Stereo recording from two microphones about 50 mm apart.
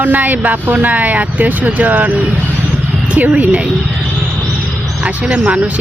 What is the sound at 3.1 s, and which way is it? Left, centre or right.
Speech, right.